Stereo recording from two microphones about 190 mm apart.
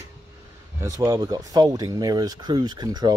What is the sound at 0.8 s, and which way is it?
Speech, 15° right (ahead or behind).